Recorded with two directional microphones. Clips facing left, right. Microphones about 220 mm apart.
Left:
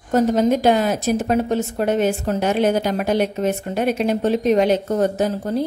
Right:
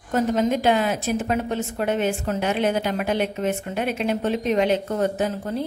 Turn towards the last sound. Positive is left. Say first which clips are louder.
# left 4 dB
turn(degrees=40)  # may be behind; listen again after turning